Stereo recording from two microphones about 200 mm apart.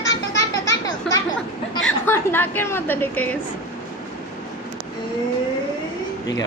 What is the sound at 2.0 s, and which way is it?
A woman's voice, 10° left (ahead or behind).